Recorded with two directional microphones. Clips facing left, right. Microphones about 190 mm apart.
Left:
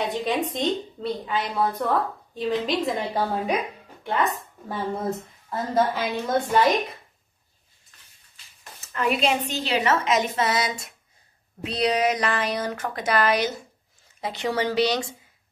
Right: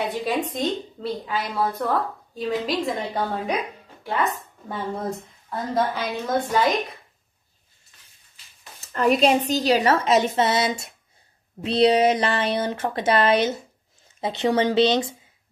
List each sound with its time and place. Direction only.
0.2 s a woman's voice: centre (ahead or behind)
8.9 s a woman's voice: 40° right (ahead or behind); by 15.1 s 20° right (ahead or behind)